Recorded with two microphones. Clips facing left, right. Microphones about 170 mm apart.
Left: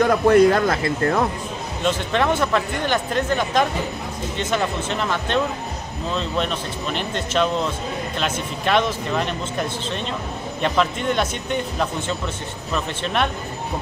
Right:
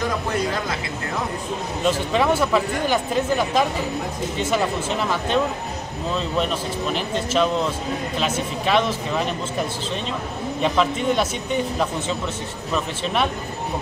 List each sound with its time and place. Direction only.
0.0 s speech: 60° left (ahead or behind)
1.9 s a man's voice: 5° right (ahead or behind)